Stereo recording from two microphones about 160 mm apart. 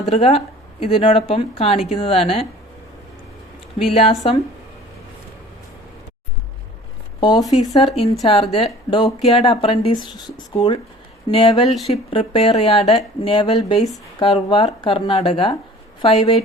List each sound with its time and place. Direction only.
0.1 s speech: 40° left (ahead or behind)
3.9 s speech: 40° left (ahead or behind)
7.2 s speech: 25° left (ahead or behind)
7.9 s speech: 40° left (ahead or behind)
9.2 s speech: 40° left (ahead or behind)